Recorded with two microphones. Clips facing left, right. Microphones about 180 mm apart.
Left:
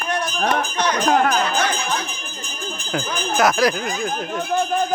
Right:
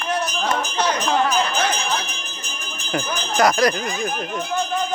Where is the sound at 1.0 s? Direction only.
55° left (ahead or behind).